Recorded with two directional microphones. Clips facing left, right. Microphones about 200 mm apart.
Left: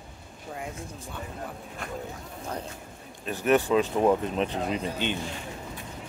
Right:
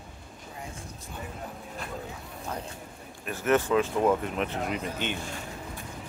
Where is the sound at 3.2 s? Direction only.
15° left (ahead or behind).